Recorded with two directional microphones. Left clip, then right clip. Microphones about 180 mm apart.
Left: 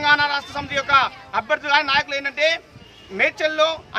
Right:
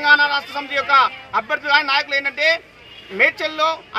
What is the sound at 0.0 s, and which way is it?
A man's voice, 35° left (ahead or behind).